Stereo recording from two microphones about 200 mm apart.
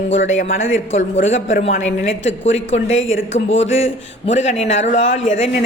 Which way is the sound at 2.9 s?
75° left (ahead or behind).